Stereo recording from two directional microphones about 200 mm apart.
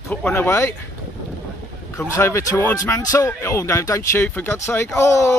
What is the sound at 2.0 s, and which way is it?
Speech, 10° left (ahead or behind).